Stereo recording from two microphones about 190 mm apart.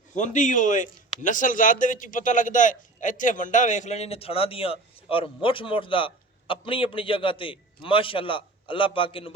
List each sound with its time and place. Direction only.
0.1 s speech: 40° left (ahead or behind)